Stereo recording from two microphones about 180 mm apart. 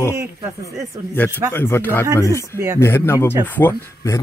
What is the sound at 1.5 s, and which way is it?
Speech, 15° left (ahead or behind).